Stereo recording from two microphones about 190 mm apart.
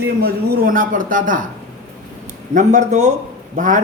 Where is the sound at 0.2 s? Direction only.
55° right (ahead or behind).